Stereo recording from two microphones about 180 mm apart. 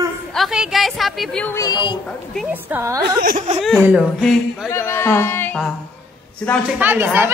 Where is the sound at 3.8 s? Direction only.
10° right (ahead or behind).